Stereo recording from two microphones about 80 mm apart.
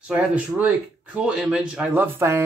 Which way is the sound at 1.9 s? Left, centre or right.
Right.